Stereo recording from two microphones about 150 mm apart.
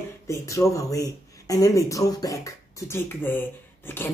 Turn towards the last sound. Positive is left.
turn(degrees=15)  # may be behind; listen again after turning